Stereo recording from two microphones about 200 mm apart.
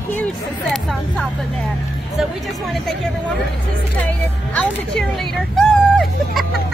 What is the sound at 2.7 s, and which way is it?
Speech, centre (ahead or behind).